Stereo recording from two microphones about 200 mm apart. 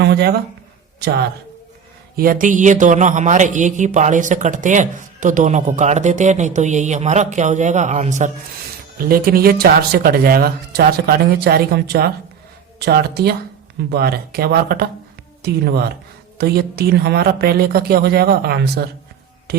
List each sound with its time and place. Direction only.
0.0 s a sound: 55° right (ahead or behind)
2.1 s speech: 45° right (ahead or behind)
9.0 s speech: 45° right (ahead or behind)